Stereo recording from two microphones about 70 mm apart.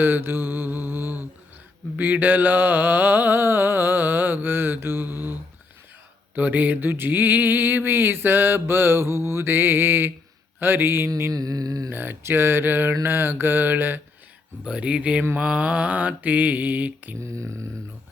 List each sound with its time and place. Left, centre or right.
0.0 s mantra: right
6.3 s mantra: right
11.3 s a sound: right
11.9 s mantra: right
14.6 s speech: centre
15.4 s mantra: centre
17.2 s a sound: right